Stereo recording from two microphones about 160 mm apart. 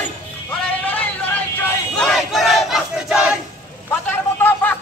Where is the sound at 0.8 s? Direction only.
10° left (ahead or behind).